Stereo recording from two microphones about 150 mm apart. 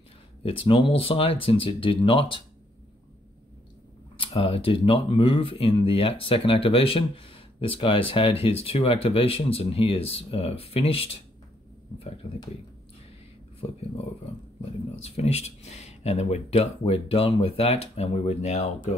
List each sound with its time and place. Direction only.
0.4 s speech: 35° left (ahead or behind)
4.2 s speech: 35° left (ahead or behind)
15.0 s speech: 45° left (ahead or behind)